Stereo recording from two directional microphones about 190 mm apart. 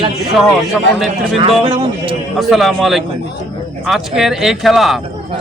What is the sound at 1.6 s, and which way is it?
Speech, 25° right (ahead or behind).